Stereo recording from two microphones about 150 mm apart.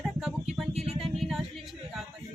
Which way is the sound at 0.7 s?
40° right (ahead or behind).